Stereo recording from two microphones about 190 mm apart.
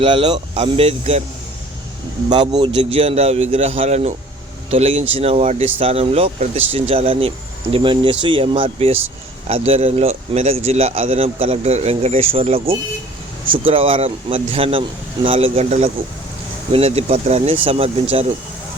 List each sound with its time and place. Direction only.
0.0 s speech: 30° right (ahead or behind)
2.3 s speech: 25° right (ahead or behind)